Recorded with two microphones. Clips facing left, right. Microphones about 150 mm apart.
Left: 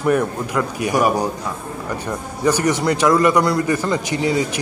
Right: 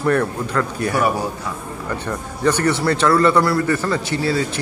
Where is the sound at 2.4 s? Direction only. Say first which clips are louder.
Even; 10° left (ahead or behind).